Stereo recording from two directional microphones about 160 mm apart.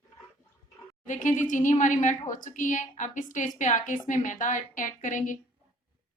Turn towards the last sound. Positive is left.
turn(degrees=55)  # may be behind; listen again after turning